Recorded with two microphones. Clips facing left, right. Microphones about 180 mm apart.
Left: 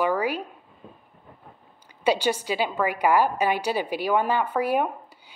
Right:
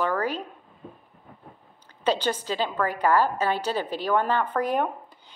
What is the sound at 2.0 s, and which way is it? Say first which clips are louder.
A woman's voice: left 2 dB; 10° left (ahead or behind).